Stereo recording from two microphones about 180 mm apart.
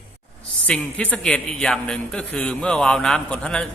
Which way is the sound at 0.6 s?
5° left (ahead or behind).